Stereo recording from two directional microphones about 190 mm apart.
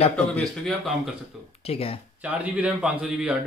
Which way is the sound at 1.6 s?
30° left (ahead or behind).